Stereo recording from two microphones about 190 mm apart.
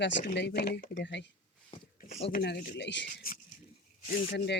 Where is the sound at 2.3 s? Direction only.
55° left (ahead or behind).